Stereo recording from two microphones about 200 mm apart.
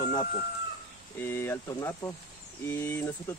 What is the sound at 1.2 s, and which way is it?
Speech, 10° left (ahead or behind).